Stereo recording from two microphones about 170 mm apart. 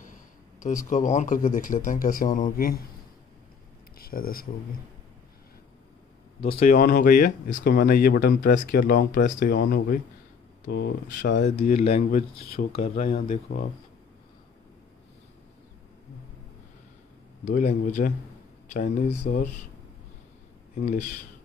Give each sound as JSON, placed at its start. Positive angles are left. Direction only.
{"t": 0.0, "sound": "speech", "side_deg": 50}
{"t": 4.0, "sound": "speech", "side_deg": 60}
{"t": 6.4, "sound": "speech", "side_deg": 35}
{"t": 6.7, "sound": "speech", "side_deg": 50}
{"t": 13.0, "sound": "speech", "side_deg": 50}
{"t": 17.5, "sound": "speech", "side_deg": 45}
{"t": 20.7, "sound": "speech", "side_deg": 45}